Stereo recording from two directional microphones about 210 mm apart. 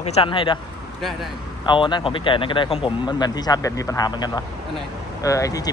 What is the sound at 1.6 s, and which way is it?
Speech, 20° left (ahead or behind).